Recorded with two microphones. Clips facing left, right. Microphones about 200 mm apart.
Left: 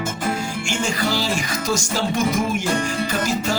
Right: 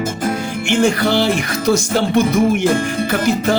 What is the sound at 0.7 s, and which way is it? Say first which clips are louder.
Music: right 9 dB; 60° right (ahead or behind).